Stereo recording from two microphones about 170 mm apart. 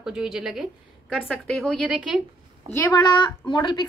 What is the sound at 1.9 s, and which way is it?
Speech, 5° right (ahead or behind).